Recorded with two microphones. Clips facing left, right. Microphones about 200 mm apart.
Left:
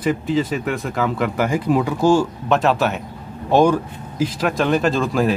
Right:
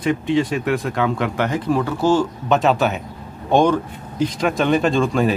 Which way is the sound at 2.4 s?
Centre (ahead or behind).